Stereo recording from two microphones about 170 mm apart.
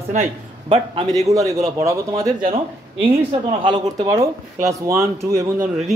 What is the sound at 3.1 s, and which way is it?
Speech, 30° right (ahead or behind).